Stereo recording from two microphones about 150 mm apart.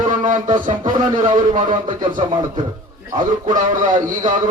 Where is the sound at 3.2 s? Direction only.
60° right (ahead or behind).